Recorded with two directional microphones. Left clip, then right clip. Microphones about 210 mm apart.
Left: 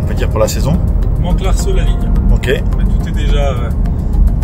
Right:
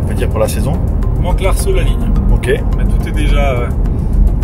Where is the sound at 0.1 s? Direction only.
10° left (ahead or behind).